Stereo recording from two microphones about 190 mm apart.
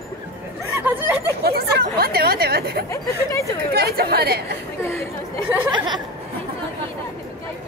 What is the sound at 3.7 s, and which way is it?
Speech, 55° right (ahead or behind).